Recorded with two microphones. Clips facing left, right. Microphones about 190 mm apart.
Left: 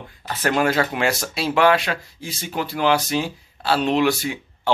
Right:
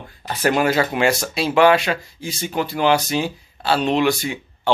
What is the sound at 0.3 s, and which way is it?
Speech, 10° right (ahead or behind).